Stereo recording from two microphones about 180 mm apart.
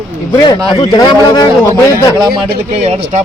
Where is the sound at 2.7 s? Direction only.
35° right (ahead or behind).